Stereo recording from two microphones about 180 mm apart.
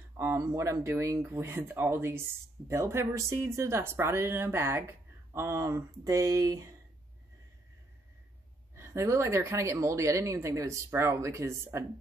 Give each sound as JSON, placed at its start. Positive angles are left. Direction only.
{"t": 0.2, "sound": "speech", "side_deg": -15}
{"t": 8.7, "sound": "speech", "side_deg": -15}